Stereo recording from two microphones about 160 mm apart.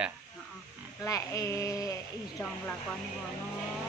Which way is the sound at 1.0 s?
20° left (ahead or behind).